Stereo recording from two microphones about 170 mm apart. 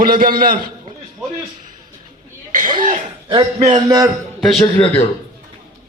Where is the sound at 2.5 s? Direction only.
45° right (ahead or behind).